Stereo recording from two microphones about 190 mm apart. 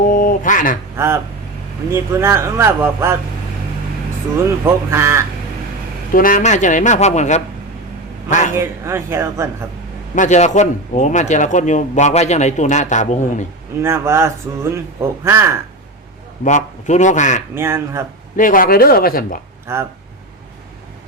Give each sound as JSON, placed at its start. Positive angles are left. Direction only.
{"t": 0.1, "sound": "speech", "side_deg": 45}
{"t": 0.9, "sound": "speech", "side_deg": -15}
{"t": 4.6, "sound": "speech", "side_deg": -15}
{"t": 6.1, "sound": "a man's voice", "side_deg": 45}
{"t": 8.5, "sound": "speech", "side_deg": -15}
{"t": 10.2, "sound": "a man's voice", "side_deg": 40}
{"t": 13.8, "sound": "speech", "side_deg": -15}
{"t": 16.4, "sound": "a man's voice", "side_deg": 40}
{"t": 17.5, "sound": "speech", "side_deg": -10}
{"t": 18.3, "sound": "speech", "side_deg": 45}
{"t": 19.7, "sound": "speech", "side_deg": -15}